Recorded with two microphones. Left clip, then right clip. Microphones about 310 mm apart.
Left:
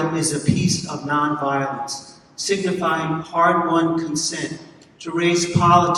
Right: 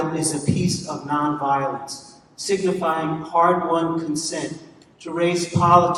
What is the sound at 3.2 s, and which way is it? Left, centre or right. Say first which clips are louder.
Speech: even; right.